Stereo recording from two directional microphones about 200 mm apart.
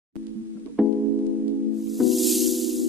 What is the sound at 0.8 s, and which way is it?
Music, centre (ahead or behind).